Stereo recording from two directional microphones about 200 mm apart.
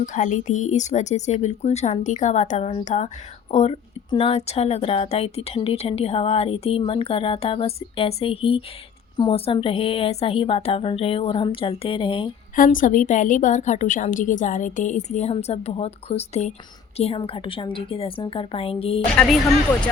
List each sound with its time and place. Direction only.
0.0 s a woman's voice: 40° left (ahead or behind)
12.5 s a woman's voice: 40° left (ahead or behind)
19.1 s speech: 5° left (ahead or behind)